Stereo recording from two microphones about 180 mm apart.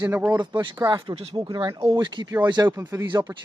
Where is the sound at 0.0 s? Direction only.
15° right (ahead or behind).